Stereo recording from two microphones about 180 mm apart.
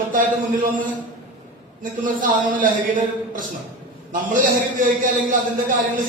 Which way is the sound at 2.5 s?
50° right (ahead or behind).